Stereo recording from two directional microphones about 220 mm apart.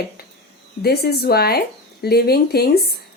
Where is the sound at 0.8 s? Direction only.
45° left (ahead or behind).